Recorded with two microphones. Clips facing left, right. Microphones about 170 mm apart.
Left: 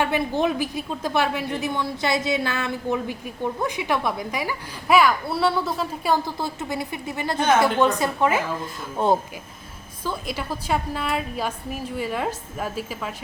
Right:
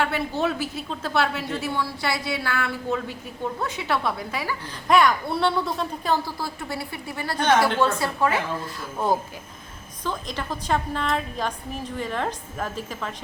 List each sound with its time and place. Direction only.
0.0 s a woman's voice: 15° left (ahead or behind)
4.9 s speech: 5° left (ahead or behind)
6.2 s speech: 20° left (ahead or behind)
10.0 s a woman's voice: 10° left (ahead or behind)